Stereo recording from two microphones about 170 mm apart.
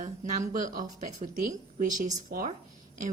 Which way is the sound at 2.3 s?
55° right (ahead or behind).